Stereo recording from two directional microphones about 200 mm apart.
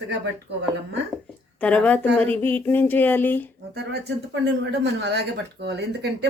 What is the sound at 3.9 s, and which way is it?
A woman's voice, 60° right (ahead or behind).